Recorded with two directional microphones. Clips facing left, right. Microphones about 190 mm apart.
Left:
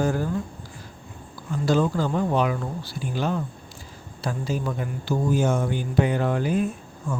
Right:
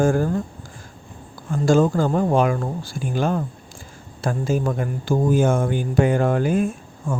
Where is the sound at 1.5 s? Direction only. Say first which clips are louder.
Right 5 dB; 45° right (ahead or behind).